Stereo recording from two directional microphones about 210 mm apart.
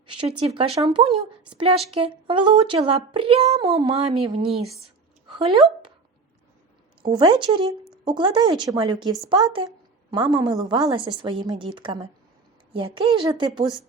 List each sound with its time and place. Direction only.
0.1 s speech: 25° right (ahead or behind)
3.8 s speech: 20° right (ahead or behind)
7.1 s speech: 25° right (ahead or behind)